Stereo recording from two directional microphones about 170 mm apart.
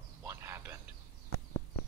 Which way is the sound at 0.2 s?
15° right (ahead or behind).